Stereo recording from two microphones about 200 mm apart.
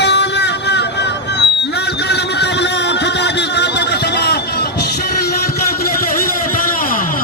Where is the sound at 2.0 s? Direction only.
55° left (ahead or behind).